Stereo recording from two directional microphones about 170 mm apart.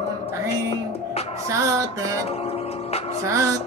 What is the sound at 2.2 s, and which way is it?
Music, 35° left (ahead or behind).